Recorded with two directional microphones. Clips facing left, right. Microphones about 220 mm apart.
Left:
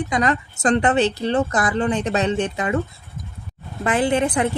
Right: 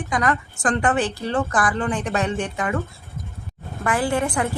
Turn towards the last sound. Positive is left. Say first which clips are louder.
# left 3 dB
turn(degrees=20)  # may be behind; listen again after turning